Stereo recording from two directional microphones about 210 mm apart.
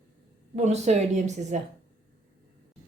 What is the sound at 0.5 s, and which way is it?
Speech, 35° right (ahead or behind).